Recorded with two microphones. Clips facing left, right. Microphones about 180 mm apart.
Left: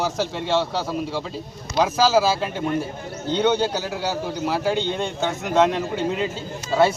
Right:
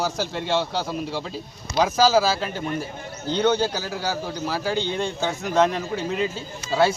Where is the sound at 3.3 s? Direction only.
20° left (ahead or behind).